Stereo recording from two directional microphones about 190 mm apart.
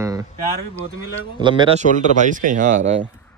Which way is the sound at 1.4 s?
25° right (ahead or behind).